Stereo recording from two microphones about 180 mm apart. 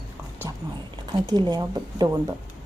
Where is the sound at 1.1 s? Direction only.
25° right (ahead or behind).